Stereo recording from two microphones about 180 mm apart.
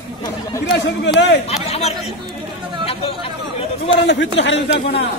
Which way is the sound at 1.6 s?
35° left (ahead or behind).